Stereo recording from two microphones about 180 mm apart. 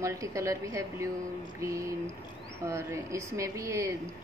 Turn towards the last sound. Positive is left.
turn(degrees=-15)  # may be behind; listen again after turning